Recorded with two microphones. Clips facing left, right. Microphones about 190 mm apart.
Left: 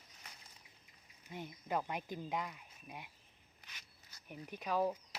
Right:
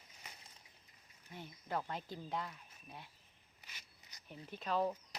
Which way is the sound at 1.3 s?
15° left (ahead or behind).